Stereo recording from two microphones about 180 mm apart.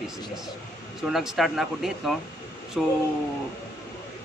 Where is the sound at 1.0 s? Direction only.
Centre (ahead or behind).